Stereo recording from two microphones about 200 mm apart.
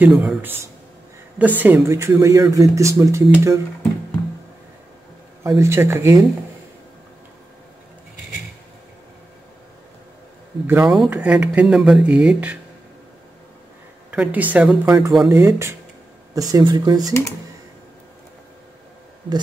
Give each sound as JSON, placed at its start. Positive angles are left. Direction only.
{"t": 0.0, "sound": "speech", "side_deg": -5}
{"t": 5.4, "sound": "speech", "side_deg": -15}
{"t": 10.7, "sound": "speech", "side_deg": -5}
{"t": 14.1, "sound": "speech", "side_deg": -5}